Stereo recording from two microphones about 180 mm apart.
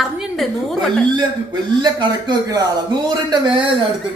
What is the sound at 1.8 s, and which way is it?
Speech, 25° right (ahead or behind).